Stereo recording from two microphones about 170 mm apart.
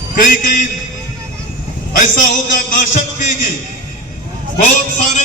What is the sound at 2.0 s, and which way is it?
A man's voice, 50° left (ahead or behind).